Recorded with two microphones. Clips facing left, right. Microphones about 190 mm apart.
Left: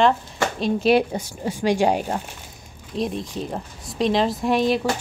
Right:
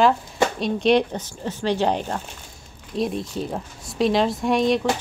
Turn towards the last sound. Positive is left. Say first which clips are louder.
# even
turn(degrees=5)  # may be behind; listen again after turning